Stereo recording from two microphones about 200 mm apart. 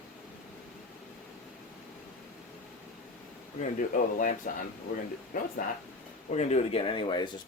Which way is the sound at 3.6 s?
40° left (ahead or behind).